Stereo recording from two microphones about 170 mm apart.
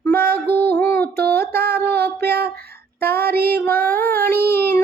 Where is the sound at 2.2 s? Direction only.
65° right (ahead or behind).